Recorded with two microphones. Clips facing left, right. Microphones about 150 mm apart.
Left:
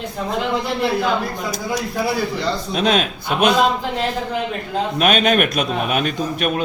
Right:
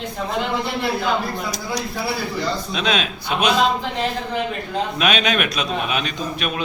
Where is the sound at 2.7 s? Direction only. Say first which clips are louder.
Left 7 dB; 45° left (ahead or behind).